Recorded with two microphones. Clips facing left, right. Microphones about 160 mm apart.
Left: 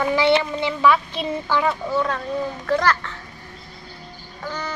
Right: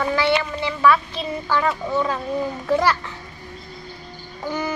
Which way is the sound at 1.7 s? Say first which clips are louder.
Even; 5° right (ahead or behind).